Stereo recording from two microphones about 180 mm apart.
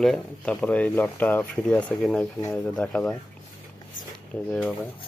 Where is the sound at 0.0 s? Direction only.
Centre (ahead or behind).